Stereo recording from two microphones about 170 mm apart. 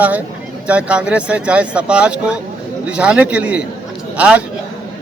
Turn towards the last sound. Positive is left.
turn(degrees=-10)  # may be behind; listen again after turning